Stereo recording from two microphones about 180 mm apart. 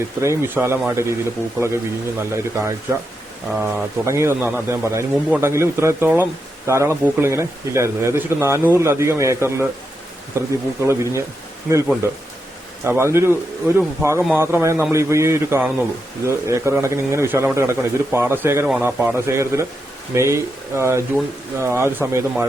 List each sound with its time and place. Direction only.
0.2 s speech: 15° right (ahead or behind)
3.5 s speech: 5° right (ahead or behind)
4.0 s speech: 15° right (ahead or behind)
12.8 s speech: 15° right (ahead or behind)